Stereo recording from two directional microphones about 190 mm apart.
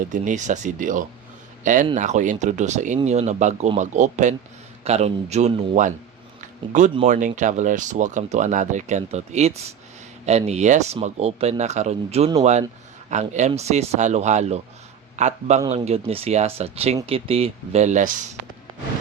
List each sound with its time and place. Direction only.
0.0 s speech: 40° right (ahead or behind)
6.4 s a sound: 40° right (ahead or behind)
6.9 s a man's voice: 40° right (ahead or behind)